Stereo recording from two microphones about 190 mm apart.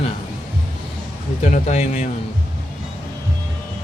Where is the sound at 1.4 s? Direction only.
35° left (ahead or behind).